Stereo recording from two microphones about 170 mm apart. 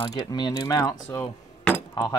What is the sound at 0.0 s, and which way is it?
Speech, 25° left (ahead or behind).